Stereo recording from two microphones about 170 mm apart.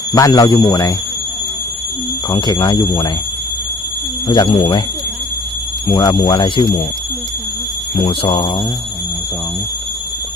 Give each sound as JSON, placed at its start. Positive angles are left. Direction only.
{"t": 0.1, "sound": "speech", "side_deg": 25}
{"t": 2.3, "sound": "speech", "side_deg": 30}
{"t": 4.3, "sound": "speech", "side_deg": 30}
{"t": 5.9, "sound": "speech", "side_deg": 25}
{"t": 8.0, "sound": "speech", "side_deg": 30}